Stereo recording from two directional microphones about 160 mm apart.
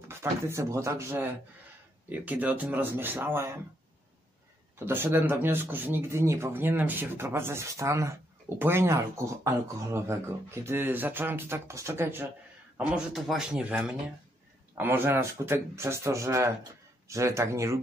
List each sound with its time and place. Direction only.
0.1 s speech: 15° right (ahead or behind)
4.7 s speech: 15° right (ahead or behind)
12.7 s a man's voice: 5° right (ahead or behind)